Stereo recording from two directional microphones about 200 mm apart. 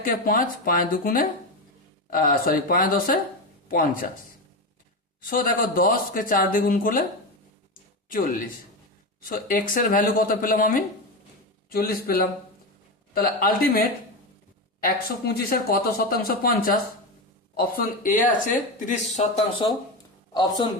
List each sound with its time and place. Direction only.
0.0 s speech: 45° left (ahead or behind)
5.2 s speech: 45° left (ahead or behind)
7.7 s a sound: 45° left (ahead or behind)
9.3 s speech: 45° left (ahead or behind)
14.8 s speech: 45° left (ahead or behind); by 19.7 s 25° left (ahead or behind)